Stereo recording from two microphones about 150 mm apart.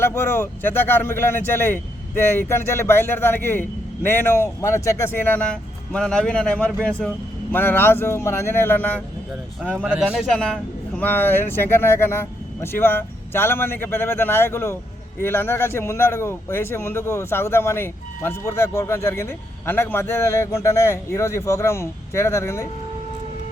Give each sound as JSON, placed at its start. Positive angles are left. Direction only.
{"t": 0.0, "sound": "a man's voice", "side_deg": 15}
{"t": 7.5, "sound": "a man's voice", "side_deg": 15}
{"t": 9.8, "sound": "speech", "side_deg": -5}
{"t": 10.3, "sound": "a man's voice", "side_deg": 5}